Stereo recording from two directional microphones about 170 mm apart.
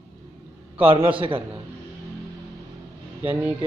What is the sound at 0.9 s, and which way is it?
Speech, 30° right (ahead or behind).